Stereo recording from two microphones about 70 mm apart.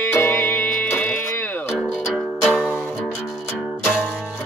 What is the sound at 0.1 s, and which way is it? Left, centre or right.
Music, left.